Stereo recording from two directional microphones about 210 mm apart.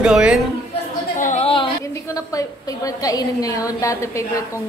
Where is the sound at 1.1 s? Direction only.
35° left (ahead or behind).